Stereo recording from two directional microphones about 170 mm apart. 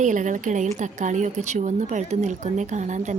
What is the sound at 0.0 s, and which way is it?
Speech, 45° right (ahead or behind).